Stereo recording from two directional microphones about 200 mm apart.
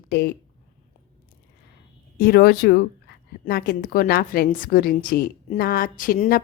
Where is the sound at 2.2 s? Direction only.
50° left (ahead or behind).